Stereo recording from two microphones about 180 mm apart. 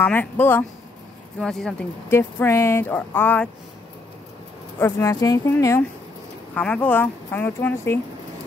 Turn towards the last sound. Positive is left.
turn(degrees=10)  # may be behind; listen again after turning